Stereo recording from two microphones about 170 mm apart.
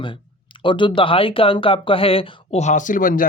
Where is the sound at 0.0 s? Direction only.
30° left (ahead or behind).